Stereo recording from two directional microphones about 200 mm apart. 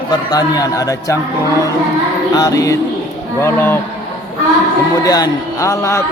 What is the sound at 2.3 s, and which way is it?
Speech, 15° left (ahead or behind).